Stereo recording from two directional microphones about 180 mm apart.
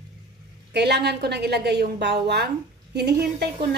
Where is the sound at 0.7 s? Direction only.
65° right (ahead or behind).